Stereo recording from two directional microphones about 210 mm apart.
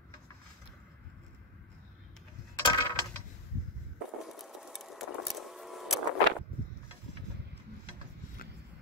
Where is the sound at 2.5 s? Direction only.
20° left (ahead or behind).